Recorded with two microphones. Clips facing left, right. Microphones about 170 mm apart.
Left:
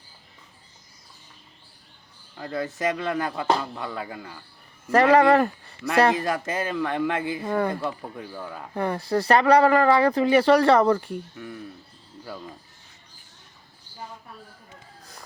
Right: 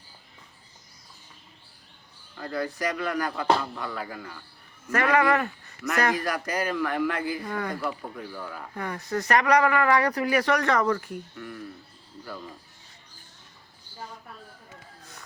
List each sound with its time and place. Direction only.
2.4 s speech: 25° left (ahead or behind)
4.9 s speech: 30° left (ahead or behind)
8.7 s speech: 30° left (ahead or behind)